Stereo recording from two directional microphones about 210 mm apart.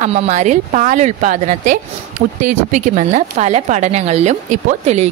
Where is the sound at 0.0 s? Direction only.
30° right (ahead or behind).